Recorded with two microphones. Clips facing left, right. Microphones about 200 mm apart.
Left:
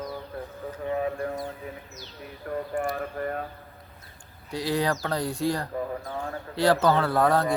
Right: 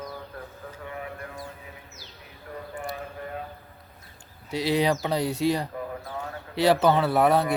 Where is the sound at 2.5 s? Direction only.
50° left (ahead or behind).